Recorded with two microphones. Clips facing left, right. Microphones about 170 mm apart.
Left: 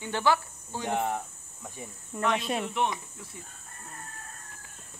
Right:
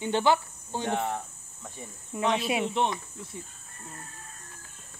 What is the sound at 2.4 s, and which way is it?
Speech, 5° right (ahead or behind).